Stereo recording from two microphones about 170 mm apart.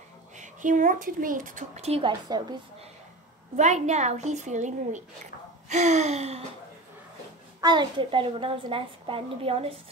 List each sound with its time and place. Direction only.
0.4 s a woman's voice: 50° right (ahead or behind); by 2.6 s 25° right (ahead or behind)
3.5 s a woman's voice: 45° right (ahead or behind)
7.6 s a child's voice: 25° right (ahead or behind)